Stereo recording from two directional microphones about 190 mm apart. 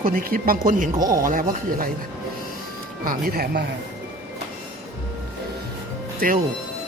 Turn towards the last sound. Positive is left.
turn(degrees=-50)  # may be behind; listen again after turning